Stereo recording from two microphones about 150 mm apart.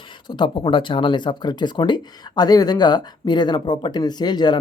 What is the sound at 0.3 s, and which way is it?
Speech, 30° left (ahead or behind).